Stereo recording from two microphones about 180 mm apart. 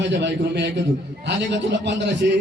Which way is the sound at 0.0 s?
75° right (ahead or behind).